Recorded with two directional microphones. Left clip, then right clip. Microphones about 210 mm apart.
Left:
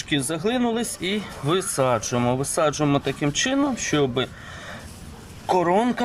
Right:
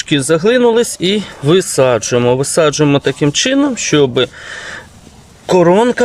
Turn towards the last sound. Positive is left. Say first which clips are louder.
# right 10 dB
turn(degrees=-50)  # may be behind; listen again after turning